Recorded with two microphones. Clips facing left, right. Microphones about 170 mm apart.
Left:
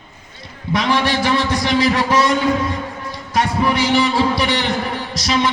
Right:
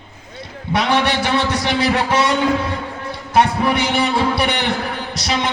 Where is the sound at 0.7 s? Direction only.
65° right (ahead or behind).